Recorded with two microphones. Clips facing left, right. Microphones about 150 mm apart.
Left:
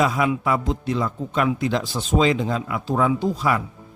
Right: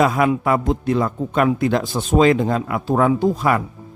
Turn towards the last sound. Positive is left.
turn(degrees=-55)  # may be behind; listen again after turning